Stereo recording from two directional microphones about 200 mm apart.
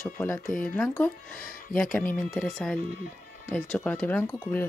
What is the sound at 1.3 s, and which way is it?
Speech, 45° left (ahead or behind).